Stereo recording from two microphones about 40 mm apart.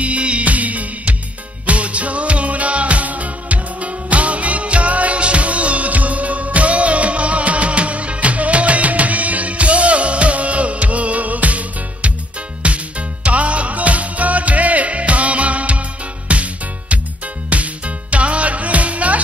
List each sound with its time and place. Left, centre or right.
0.0 s music: right
17.5 s music: right